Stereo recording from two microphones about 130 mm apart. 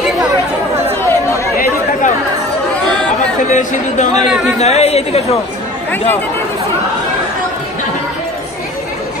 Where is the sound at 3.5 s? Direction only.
70° left (ahead or behind).